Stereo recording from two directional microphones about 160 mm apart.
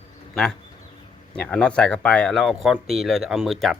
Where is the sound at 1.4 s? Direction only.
5° left (ahead or behind).